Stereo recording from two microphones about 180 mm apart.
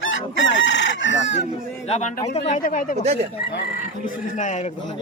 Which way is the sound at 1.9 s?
40° left (ahead or behind).